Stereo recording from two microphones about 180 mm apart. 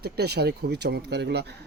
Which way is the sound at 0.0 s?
65° right (ahead or behind).